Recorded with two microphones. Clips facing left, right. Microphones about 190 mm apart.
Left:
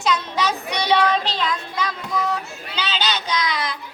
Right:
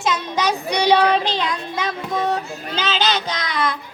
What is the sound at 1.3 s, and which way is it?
Child singing, 20° right (ahead or behind).